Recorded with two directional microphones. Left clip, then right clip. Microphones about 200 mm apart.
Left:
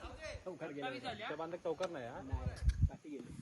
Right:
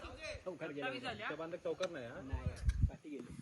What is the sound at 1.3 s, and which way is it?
Speech, 25° left (ahead or behind).